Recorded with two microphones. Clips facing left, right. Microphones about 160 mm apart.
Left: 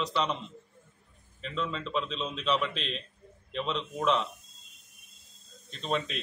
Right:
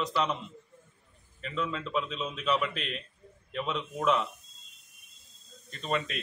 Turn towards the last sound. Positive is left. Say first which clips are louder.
# even
turn(degrees=-5)  # may be behind; listen again after turning